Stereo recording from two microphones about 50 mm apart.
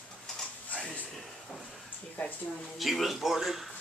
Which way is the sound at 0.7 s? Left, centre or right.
Left.